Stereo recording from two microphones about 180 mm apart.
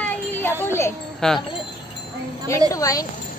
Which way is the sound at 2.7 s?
20° left (ahead or behind).